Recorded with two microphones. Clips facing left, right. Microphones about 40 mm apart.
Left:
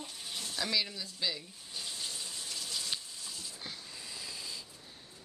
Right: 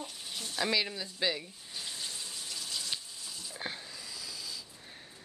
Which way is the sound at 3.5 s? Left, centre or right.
Right.